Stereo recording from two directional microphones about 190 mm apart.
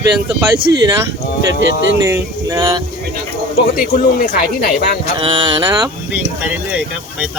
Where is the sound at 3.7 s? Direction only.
50° left (ahead or behind).